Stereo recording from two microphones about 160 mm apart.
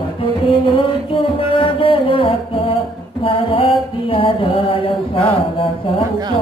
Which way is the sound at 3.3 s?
35° left (ahead or behind).